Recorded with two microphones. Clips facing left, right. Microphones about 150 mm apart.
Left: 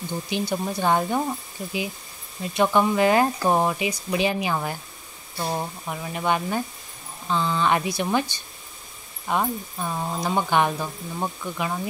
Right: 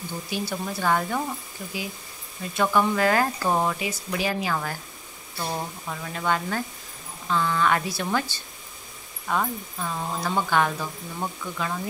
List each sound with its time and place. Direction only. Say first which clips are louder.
0.3 s speech: left 3 dB; 20° left (ahead or behind)